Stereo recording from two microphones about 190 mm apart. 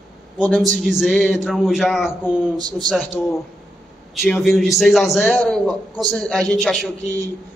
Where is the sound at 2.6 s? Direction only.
20° right (ahead or behind).